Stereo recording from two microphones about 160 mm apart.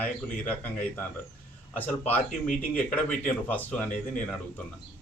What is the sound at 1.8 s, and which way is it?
A man's voice, 10° left (ahead or behind).